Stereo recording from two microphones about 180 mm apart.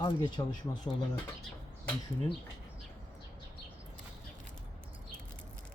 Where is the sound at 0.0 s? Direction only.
25° left (ahead or behind).